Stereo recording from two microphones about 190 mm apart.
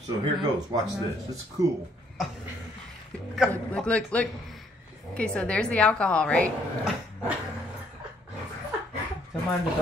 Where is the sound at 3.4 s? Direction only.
5° left (ahead or behind).